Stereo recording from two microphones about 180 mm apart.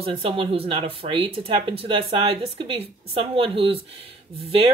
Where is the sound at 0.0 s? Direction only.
30° right (ahead or behind).